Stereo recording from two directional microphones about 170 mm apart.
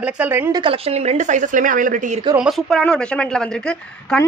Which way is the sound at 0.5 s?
35° right (ahead or behind).